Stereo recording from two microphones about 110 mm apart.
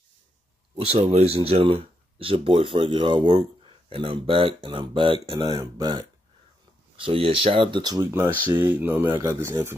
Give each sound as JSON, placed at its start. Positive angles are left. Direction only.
{"t": 0.7, "sound": "speech", "side_deg": -65}
{"t": 7.0, "sound": "speech", "side_deg": -55}
{"t": 8.1, "sound": "speech", "side_deg": -25}
{"t": 9.2, "sound": "speech", "side_deg": -25}